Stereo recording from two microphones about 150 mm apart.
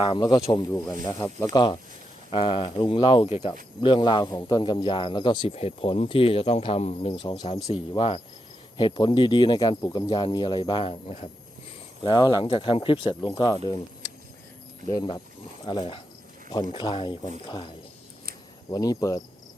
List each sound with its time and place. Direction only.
0.0 s speech: 30° left (ahead or behind)
1.5 s speech: 30° left (ahead or behind)
3.8 s speech: 30° left (ahead or behind)
7.2 s speech: 30° left (ahead or behind)
12.0 s speech: 30° left (ahead or behind)
14.8 s speech: 25° left (ahead or behind)
18.7 s speech: 25° left (ahead or behind)